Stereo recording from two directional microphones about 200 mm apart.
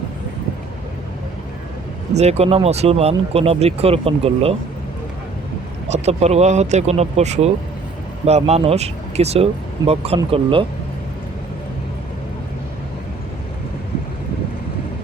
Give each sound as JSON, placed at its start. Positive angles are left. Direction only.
{"t": 2.1, "sound": "speech", "side_deg": -30}
{"t": 5.9, "sound": "speech", "side_deg": -35}